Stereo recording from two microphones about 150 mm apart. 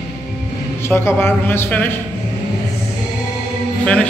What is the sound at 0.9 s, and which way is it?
Music, 15° left (ahead or behind).